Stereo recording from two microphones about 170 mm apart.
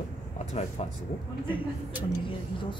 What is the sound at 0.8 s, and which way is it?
Speech, 40° left (ahead or behind).